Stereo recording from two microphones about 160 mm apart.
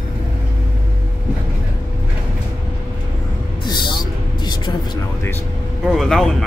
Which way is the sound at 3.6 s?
30° left (ahead or behind).